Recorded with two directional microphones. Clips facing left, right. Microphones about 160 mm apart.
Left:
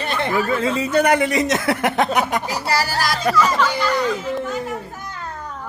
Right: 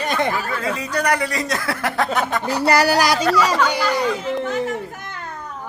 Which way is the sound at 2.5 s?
70° right (ahead or behind).